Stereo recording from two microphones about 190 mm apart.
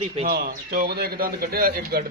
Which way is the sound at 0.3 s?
50° right (ahead or behind).